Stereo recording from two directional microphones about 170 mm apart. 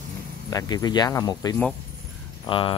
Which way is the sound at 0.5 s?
20° left (ahead or behind).